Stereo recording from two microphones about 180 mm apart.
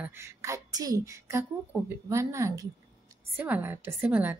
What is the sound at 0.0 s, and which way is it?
A woman's voice, 15° right (ahead or behind).